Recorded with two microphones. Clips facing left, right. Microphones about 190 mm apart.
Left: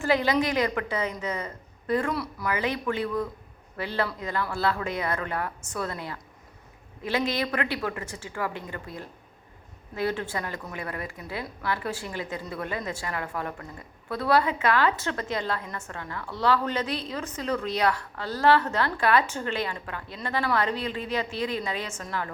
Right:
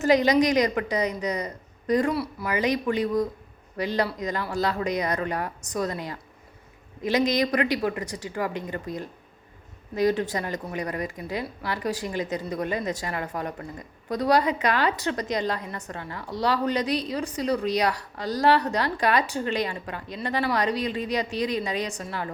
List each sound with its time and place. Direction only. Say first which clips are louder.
0.0 s speech: right 4 dB; 20° right (ahead or behind)
2.0 s speech: right 2 dB; 25° right (ahead or behind)
2.6 s speech: right 5 dB; 15° right (ahead or behind)